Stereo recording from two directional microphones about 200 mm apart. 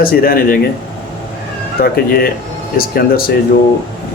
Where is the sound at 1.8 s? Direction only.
50° left (ahead or behind).